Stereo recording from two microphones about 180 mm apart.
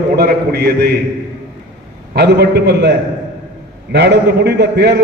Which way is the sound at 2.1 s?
65° right (ahead or behind).